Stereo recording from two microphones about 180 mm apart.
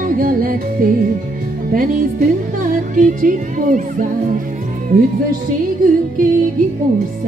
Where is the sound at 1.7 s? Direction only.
50° right (ahead or behind).